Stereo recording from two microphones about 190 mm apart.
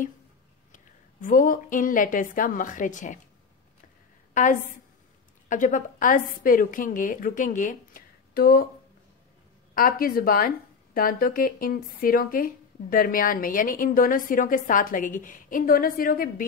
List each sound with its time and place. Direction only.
1.2 s speech: 45° left (ahead or behind)
4.3 s a woman's voice: 40° left (ahead or behind)
9.8 s speech: 50° left (ahead or behind)